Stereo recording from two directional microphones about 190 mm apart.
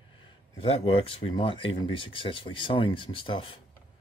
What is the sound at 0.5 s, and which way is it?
Speech, 30° left (ahead or behind).